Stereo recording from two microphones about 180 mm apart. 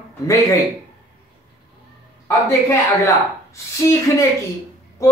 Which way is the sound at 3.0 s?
15° left (ahead or behind).